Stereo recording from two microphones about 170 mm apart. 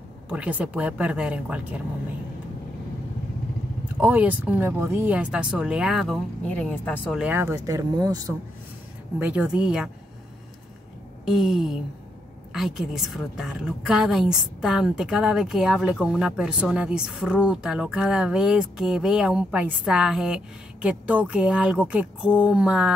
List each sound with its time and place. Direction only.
0.3 s speech: 10° right (ahead or behind)
4.0 s speech: 10° right (ahead or behind)
6.5 s speech: 10° left (ahead or behind)
7.2 s speech: 10° right (ahead or behind)
9.2 s a woman's voice: 5° right (ahead or behind)
11.2 s a woman's voice: centre (ahead or behind)